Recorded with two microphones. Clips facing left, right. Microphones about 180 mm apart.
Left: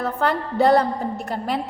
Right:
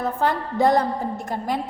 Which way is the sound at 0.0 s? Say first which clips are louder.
Even; 70° left (ahead or behind).